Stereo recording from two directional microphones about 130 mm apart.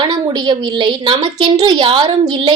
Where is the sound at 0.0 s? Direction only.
35° right (ahead or behind).